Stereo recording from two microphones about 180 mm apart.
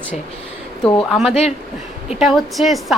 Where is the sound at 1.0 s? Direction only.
Centre (ahead or behind).